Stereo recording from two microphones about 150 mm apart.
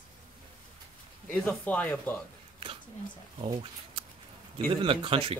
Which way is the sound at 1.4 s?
10° left (ahead or behind).